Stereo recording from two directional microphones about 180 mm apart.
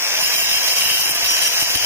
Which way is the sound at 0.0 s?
15° right (ahead or behind).